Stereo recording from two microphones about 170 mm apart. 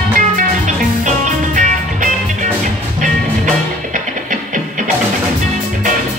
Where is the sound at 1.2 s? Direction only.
50° right (ahead or behind).